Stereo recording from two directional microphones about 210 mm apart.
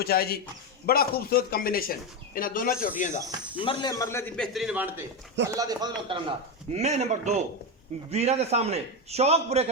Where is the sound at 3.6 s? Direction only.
25° left (ahead or behind).